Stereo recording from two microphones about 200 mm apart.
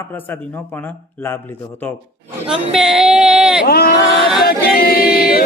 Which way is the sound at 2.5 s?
5° right (ahead or behind).